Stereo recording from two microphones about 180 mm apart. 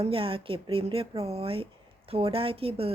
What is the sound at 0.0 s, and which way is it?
A woman's voice, 30° right (ahead or behind).